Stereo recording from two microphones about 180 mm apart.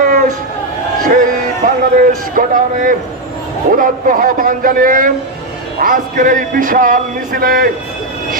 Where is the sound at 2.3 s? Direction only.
50° right (ahead or behind).